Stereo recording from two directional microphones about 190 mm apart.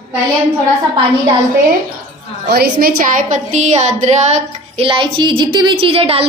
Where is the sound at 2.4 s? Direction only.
55° right (ahead or behind); by 6.3 s 30° right (ahead or behind).